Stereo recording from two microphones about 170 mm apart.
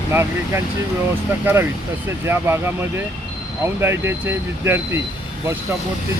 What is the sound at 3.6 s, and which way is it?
Speech, 15° right (ahead or behind).